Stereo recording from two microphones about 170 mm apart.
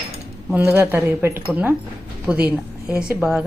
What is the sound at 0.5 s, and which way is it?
A woman's voice, 10° right (ahead or behind).